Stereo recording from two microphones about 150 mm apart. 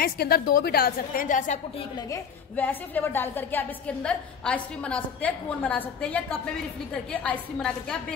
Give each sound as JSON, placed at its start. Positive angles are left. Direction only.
{"t": 0.0, "sound": "a woman's voice", "side_deg": 90}
{"t": 2.0, "sound": "a woman's voice", "side_deg": 15}